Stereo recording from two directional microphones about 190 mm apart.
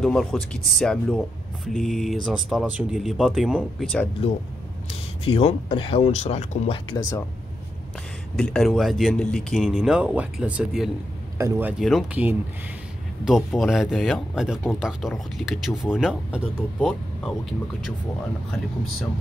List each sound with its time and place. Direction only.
0.0 s speech: centre (ahead or behind)
5.2 s speech: 30° left (ahead or behind)
8.4 s speech: centre (ahead or behind)
11.3 s speech: 15° right (ahead or behind)
11.8 s speech: 5° right (ahead or behind)